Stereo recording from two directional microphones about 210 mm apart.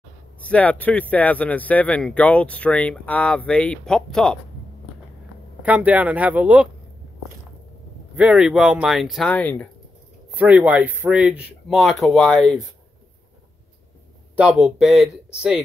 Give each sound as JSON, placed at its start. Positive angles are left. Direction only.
{"t": 0.4, "sound": "speech", "side_deg": 5}
{"t": 5.6, "sound": "speech", "side_deg": -5}
{"t": 8.2, "sound": "speech", "side_deg": -5}
{"t": 10.3, "sound": "speech", "side_deg": -10}
{"t": 14.3, "sound": "speech", "side_deg": -5}